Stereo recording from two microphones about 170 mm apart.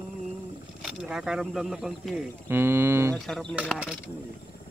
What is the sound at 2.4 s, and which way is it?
Speech, 15° right (ahead or behind).